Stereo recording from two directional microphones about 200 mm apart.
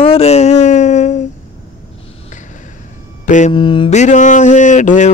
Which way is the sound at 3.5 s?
25° left (ahead or behind).